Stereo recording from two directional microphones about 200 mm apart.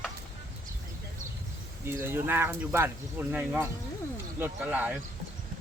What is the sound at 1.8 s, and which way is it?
Speech, 10° right (ahead or behind).